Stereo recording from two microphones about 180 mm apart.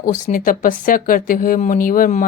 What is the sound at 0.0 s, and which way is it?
Speech, 50° left (ahead or behind).